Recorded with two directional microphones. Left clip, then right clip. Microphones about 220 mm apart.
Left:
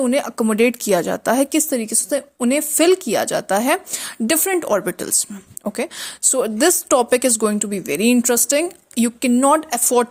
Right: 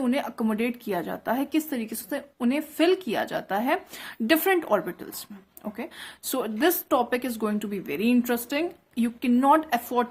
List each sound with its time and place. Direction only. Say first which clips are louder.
0.0 s speech: left 9 dB; 30° left (ahead or behind)